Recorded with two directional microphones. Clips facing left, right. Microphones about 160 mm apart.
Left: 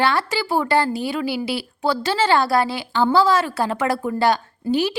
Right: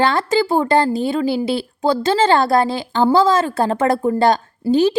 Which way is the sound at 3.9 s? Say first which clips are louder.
Right 4 dB; 30° right (ahead or behind).